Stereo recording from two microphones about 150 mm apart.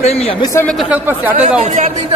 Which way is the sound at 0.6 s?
Centre (ahead or behind).